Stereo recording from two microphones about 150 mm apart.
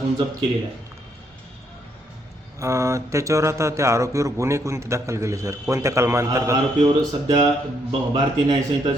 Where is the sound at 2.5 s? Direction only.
20° right (ahead or behind).